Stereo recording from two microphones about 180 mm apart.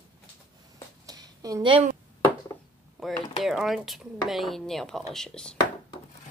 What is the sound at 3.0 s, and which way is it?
Speech, centre (ahead or behind).